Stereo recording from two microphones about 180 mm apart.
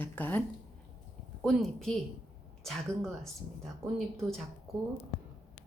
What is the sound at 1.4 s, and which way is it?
A woman's voice, centre (ahead or behind).